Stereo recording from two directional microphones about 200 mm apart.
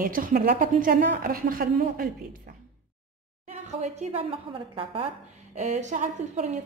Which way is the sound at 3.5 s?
35° right (ahead or behind).